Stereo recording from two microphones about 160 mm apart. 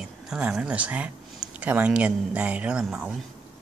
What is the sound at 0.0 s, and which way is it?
Speech, 5° right (ahead or behind).